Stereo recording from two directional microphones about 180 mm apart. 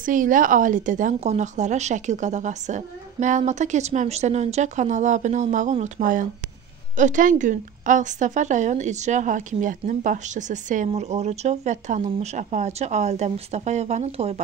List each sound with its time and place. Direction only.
0.0 s speech: 50° right (ahead or behind)